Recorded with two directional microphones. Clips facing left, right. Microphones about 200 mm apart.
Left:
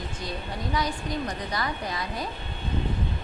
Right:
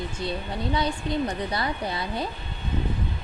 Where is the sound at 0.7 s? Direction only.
30° right (ahead or behind).